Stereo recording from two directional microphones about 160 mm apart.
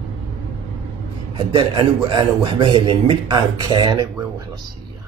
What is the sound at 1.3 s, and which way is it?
A man's voice, 30° right (ahead or behind).